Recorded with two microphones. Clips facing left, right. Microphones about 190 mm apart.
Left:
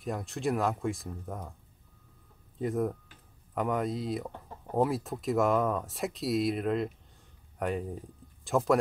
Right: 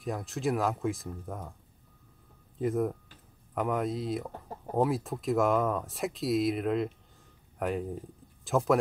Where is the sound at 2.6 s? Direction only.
Centre (ahead or behind).